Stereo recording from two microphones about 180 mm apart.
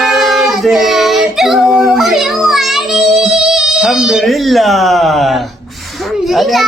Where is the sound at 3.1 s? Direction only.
5° right (ahead or behind).